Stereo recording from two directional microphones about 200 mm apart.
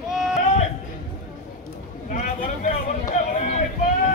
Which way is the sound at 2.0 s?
40° left (ahead or behind).